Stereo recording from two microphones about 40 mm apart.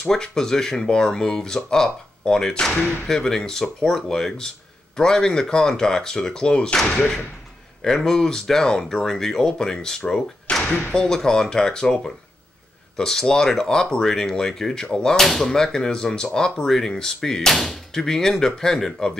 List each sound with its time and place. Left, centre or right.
0.1 s speech: centre
7.8 s speech: centre
10.5 s thump: left
10.9 s speech: centre
15.1 s speech: centre